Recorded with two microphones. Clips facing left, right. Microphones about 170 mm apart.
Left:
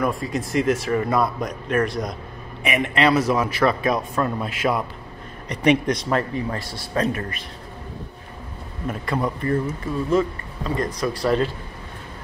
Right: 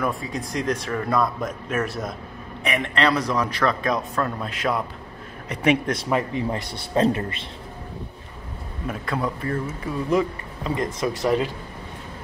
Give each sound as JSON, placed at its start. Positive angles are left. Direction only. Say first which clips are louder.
{"t": 0.0, "sound": "speech", "louder": "left 3 dB", "side_deg": 0}
{"t": 2.6, "sound": "a man's voice", "louder": "left 2 dB", "side_deg": 5}
{"t": 6.3, "sound": "speech", "louder": "right 1 dB", "side_deg": -20}
{"t": 8.8, "sound": "speech", "louder": "left 2 dB", "side_deg": 0}
{"t": 10.0, "sound": "speech", "louder": "left 1 dB", "side_deg": -20}